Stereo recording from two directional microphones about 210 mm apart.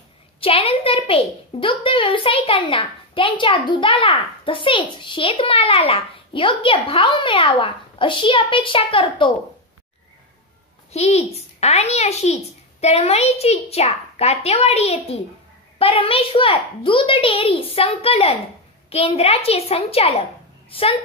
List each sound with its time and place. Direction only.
0.4 s a child's voice: 25° left (ahead or behind)
10.9 s a child's voice: 30° left (ahead or behind)